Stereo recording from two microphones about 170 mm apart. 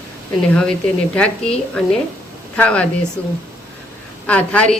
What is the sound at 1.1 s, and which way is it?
A woman's voice, 5° left (ahead or behind).